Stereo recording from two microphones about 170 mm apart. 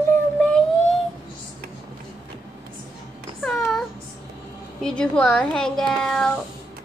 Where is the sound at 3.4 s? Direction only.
Centre (ahead or behind).